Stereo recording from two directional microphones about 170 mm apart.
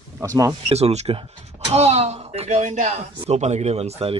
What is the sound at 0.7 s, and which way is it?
Speech, 35° right (ahead or behind).